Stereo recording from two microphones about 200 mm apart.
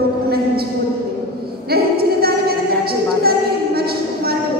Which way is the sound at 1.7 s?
50° right (ahead or behind).